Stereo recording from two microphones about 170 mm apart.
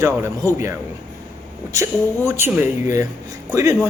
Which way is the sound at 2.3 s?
15° right (ahead or behind).